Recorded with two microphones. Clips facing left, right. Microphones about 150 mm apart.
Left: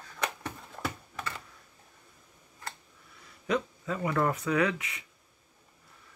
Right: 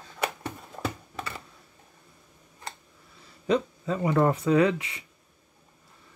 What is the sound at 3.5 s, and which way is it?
Speech, 30° right (ahead or behind).